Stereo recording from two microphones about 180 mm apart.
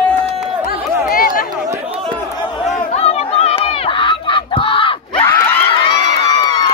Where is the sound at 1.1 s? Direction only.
55° left (ahead or behind).